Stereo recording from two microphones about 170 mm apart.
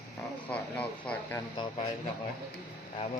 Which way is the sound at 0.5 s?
5° left (ahead or behind).